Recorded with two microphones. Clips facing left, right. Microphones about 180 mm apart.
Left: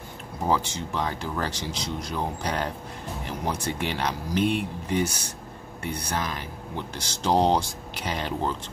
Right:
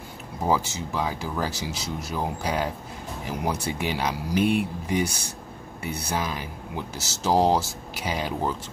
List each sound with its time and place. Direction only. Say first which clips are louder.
0.5 s speech: right 1 dB; 5° right (ahead or behind)